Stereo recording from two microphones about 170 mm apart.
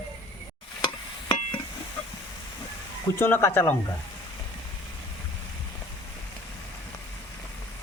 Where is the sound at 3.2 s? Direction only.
15° left (ahead or behind).